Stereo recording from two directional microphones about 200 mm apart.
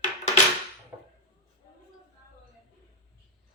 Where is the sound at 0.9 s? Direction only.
25° right (ahead or behind).